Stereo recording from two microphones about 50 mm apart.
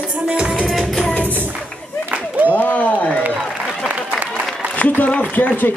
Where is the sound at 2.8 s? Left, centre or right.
Left.